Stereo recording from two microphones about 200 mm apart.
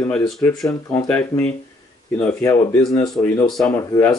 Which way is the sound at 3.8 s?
20° left (ahead or behind).